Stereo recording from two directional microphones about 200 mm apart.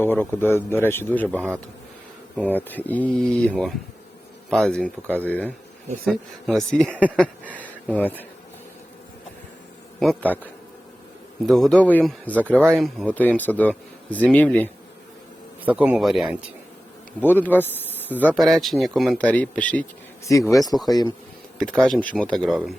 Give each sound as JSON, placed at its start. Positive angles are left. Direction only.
{"t": 0.0, "sound": "speech", "side_deg": 10}
{"t": 10.0, "sound": "speech", "side_deg": 5}
{"t": 15.6, "sound": "speech", "side_deg": -5}
{"t": 17.4, "sound": "speech", "side_deg": 10}
{"t": 21.6, "sound": "speech", "side_deg": 5}